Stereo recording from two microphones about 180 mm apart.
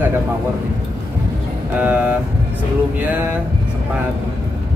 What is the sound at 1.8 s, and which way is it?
Music, 10° right (ahead or behind).